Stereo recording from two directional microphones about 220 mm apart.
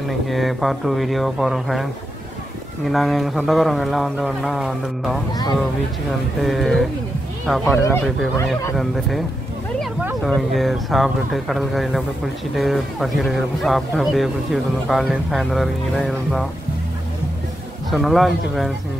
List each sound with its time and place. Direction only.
0.1 s speech: centre (ahead or behind)
5.3 s speech: 20° left (ahead or behind)
6.4 s speech: centre (ahead or behind)
17.9 s speech: centre (ahead or behind)